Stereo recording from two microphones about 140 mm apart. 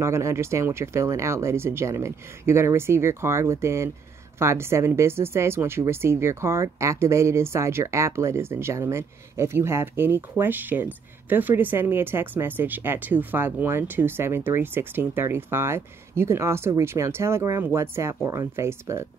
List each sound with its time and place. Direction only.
0.0 s speech: 20° right (ahead or behind)